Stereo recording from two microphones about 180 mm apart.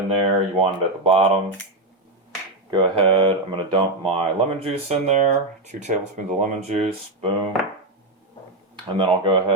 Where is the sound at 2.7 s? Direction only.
25° right (ahead or behind).